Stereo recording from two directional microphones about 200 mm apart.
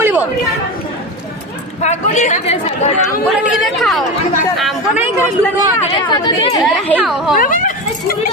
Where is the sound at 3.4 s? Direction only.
Centre (ahead or behind).